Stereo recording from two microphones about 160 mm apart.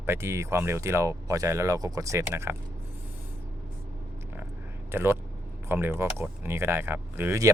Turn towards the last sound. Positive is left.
turn(degrees=-15)  # may be behind; listen again after turning